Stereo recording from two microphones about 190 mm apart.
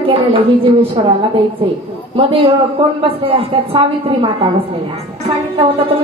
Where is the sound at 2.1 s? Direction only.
30° right (ahead or behind).